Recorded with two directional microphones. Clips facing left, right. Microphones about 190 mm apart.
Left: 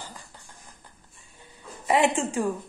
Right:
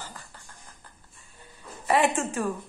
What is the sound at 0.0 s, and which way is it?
Music, 15° left (ahead or behind).